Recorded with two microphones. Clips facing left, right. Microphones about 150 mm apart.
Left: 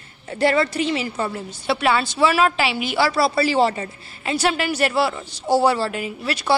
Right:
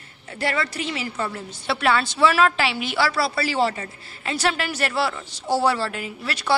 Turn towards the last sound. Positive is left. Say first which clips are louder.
# left 4 dB
turn(degrees=15)  # may be behind; listen again after turning